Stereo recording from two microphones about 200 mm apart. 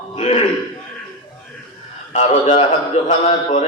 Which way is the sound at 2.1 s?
35° left (ahead or behind).